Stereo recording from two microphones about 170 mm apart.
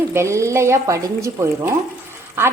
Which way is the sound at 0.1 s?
15° right (ahead or behind).